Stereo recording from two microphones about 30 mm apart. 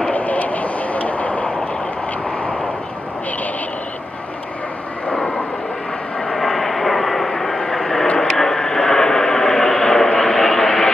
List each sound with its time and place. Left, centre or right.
0.1 s vehicle: left
5.1 s vehicle: left
6.3 s vehicle: centre